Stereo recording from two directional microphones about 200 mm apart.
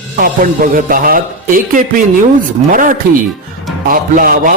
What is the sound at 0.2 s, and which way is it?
Speech, 45° right (ahead or behind).